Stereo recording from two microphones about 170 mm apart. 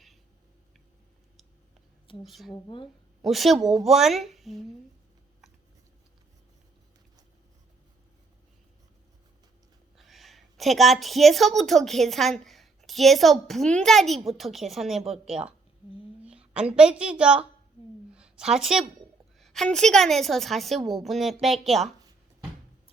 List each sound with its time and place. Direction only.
2.2 s a woman's voice: centre (ahead or behind)
2.5 s speech: 30° left (ahead or behind)
3.2 s a woman's voice: centre (ahead or behind)
10.0 s a woman's voice: centre (ahead or behind)
18.1 s a sound: 5° right (ahead or behind)
19.4 s a woman's voice: centre (ahead or behind)